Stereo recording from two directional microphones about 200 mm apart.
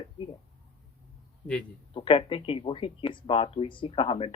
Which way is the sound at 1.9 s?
25° left (ahead or behind).